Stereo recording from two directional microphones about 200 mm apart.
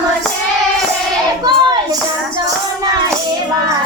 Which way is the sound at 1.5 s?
20° right (ahead or behind).